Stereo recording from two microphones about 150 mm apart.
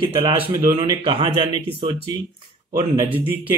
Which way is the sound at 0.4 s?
15° right (ahead or behind).